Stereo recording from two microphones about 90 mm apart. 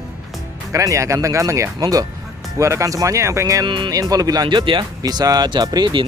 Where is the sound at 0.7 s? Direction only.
35° right (ahead or behind).